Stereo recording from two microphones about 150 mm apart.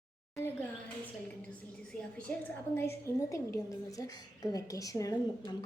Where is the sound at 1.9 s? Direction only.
5° left (ahead or behind).